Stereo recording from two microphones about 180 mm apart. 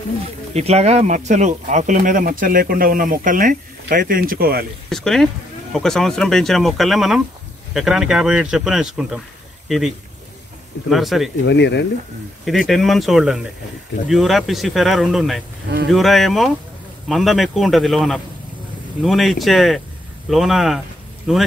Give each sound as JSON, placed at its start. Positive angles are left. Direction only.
{"t": 0.6, "sound": "speech", "side_deg": -35}
{"t": 4.8, "sound": "speech", "side_deg": 0}
{"t": 11.4, "sound": "speech", "side_deg": 70}
{"t": 12.4, "sound": "speech", "side_deg": 0}